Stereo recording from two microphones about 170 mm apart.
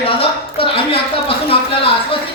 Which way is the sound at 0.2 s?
30° left (ahead or behind).